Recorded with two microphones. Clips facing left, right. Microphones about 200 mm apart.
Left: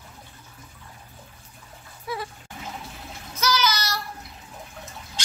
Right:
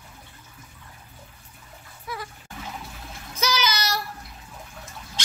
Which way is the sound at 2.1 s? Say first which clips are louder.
Left 4 dB; 25° left (ahead or behind).